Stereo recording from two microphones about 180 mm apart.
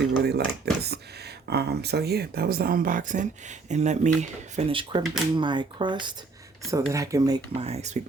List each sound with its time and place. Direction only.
0.3 s speech: 65° right (ahead or behind); by 7.3 s 20° right (ahead or behind)
7.6 s speech: 35° right (ahead or behind)